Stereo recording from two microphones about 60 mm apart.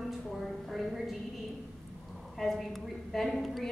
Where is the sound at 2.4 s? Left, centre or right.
Centre.